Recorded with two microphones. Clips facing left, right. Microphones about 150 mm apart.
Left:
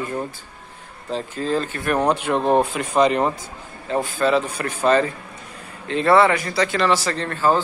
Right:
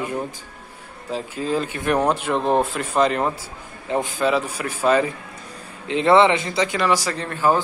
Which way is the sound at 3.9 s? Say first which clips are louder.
Left 1 dB; 15° right (ahead or behind).